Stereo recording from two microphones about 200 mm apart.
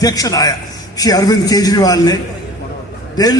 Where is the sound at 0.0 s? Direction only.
20° left (ahead or behind).